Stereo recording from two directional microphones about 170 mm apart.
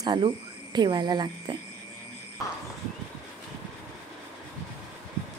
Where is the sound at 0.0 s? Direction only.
25° right (ahead or behind).